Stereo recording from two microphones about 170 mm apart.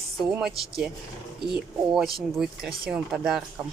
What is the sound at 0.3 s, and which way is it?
Speech, centre (ahead or behind).